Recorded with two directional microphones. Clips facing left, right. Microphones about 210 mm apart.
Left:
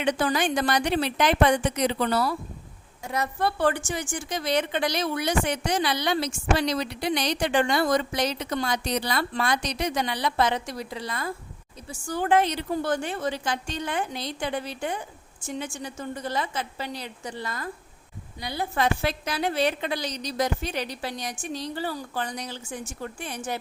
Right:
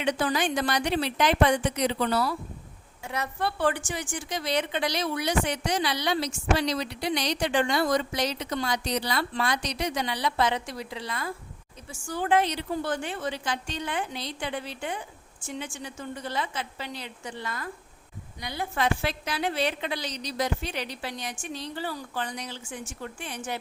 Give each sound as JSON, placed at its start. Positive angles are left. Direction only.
{"t": 0.0, "sound": "a woman's voice", "side_deg": 50}